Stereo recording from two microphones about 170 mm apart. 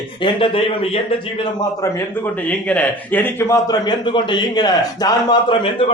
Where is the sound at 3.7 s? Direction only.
25° left (ahead or behind).